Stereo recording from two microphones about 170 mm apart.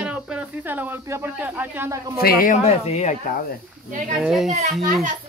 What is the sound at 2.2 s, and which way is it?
Speech, 60° left (ahead or behind).